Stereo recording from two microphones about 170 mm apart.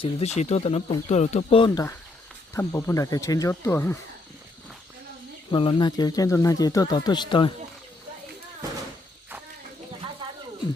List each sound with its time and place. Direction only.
0.0 s speech: 40° left (ahead or behind)
2.5 s speech: 15° left (ahead or behind)
5.5 s speech: 30° left (ahead or behind)